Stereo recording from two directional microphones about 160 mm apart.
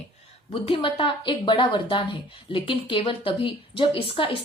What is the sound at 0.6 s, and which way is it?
A woman's voice, 35° left (ahead or behind).